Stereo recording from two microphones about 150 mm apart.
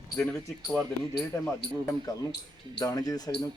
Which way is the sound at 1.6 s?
90° left.